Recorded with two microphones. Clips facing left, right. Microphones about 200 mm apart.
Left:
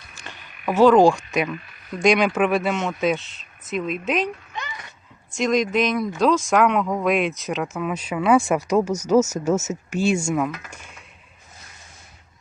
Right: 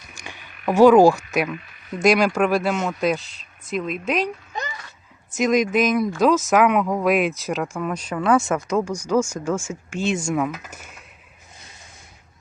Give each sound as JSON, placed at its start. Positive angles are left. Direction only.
{"t": 0.1, "sound": "frog", "side_deg": -10}
{"t": 0.7, "sound": "speech", "side_deg": -10}
{"t": 4.5, "sound": "a sound", "side_deg": -40}
{"t": 5.3, "sound": "speech", "side_deg": -5}
{"t": 9.2, "sound": "speech", "side_deg": 40}
{"t": 9.9, "sound": "speech", "side_deg": 10}